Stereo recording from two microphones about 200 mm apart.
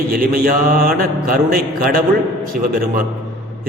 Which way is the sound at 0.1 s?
45° right (ahead or behind).